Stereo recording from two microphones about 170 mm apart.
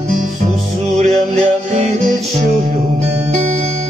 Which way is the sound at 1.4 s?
40° right (ahead or behind).